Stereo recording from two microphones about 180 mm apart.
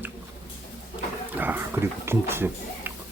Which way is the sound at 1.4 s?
10° right (ahead or behind).